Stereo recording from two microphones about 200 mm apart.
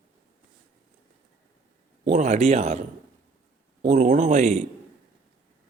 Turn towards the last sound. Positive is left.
turn(degrees=-40)  # may be behind; listen again after turning